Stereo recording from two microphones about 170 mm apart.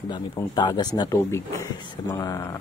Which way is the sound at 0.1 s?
25° left (ahead or behind).